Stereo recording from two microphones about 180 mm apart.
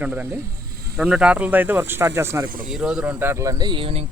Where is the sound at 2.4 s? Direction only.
50° right (ahead or behind).